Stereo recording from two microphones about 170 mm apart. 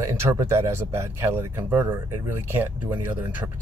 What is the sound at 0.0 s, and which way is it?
Speech, 15° right (ahead or behind).